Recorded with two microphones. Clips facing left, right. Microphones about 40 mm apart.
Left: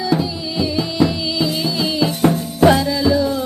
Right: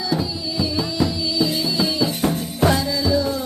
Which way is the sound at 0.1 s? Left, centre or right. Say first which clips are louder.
Left 3 dB; left.